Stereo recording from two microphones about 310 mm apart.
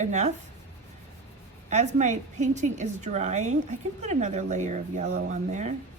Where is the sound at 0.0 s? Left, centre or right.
Right.